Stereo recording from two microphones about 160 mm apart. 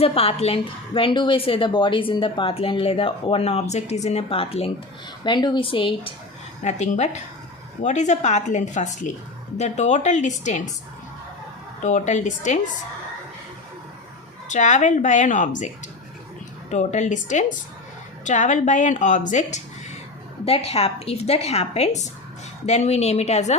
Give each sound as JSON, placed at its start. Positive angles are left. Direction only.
{"t": 0.0, "sound": "a woman's voice", "side_deg": 35}
{"t": 6.6, "sound": "speech", "side_deg": 45}
{"t": 11.8, "sound": "speech", "side_deg": 50}
{"t": 14.4, "sound": "speech", "side_deg": 50}
{"t": 20.4, "sound": "a woman's voice", "side_deg": 40}